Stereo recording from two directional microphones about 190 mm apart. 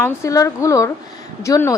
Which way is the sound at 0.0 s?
15° left (ahead or behind).